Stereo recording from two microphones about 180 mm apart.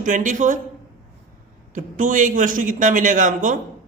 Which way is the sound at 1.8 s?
45° right (ahead or behind).